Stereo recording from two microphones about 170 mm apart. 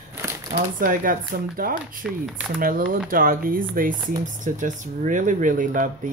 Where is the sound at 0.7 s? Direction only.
55° right (ahead or behind).